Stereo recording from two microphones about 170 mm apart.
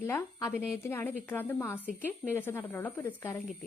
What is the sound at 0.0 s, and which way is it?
Speech, 15° left (ahead or behind).